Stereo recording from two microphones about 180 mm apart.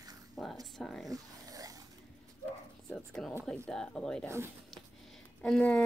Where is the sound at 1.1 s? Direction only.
20° right (ahead or behind).